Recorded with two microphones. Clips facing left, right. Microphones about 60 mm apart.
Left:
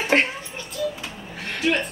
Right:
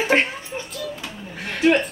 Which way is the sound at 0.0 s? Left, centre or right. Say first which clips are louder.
Right 1 dB; centre.